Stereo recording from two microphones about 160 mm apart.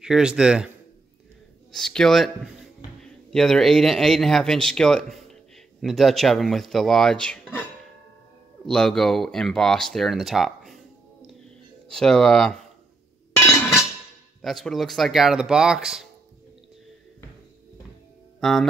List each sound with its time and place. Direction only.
0.0 s speech: 5° right (ahead or behind)
1.7 s speech: 5° left (ahead or behind)
8.6 s speech: 5° left (ahead or behind)
11.9 s speech: 5° left (ahead or behind)
13.4 s a sound: 15° left (ahead or behind)
14.4 s speech: centre (ahead or behind)
18.4 s music: centre (ahead or behind)